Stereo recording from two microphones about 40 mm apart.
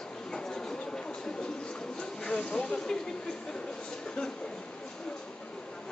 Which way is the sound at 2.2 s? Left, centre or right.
Left.